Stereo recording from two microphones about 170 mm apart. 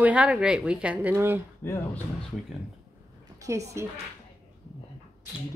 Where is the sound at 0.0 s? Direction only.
5° right (ahead or behind).